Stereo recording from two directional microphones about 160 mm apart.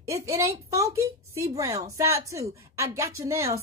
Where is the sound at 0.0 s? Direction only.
20° right (ahead or behind).